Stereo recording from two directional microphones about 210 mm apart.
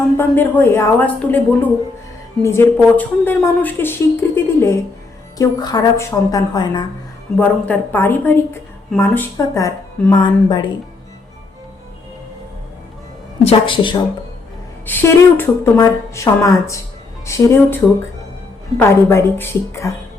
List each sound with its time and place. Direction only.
0.2 s a woman's voice: 10° left (ahead or behind)
7.3 s a woman's voice: 10° left (ahead or behind)
13.4 s a woman's voice: 25° left (ahead or behind)
14.8 s a woman's voice: 10° left (ahead or behind)
18.8 s a woman's voice: 10° left (ahead or behind)